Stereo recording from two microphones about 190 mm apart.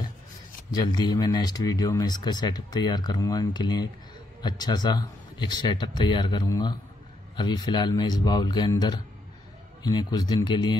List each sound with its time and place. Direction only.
0.7 s speech: 20° left (ahead or behind)